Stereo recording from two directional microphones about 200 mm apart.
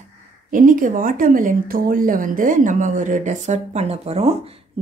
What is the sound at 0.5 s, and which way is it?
Speech, 40° right (ahead or behind).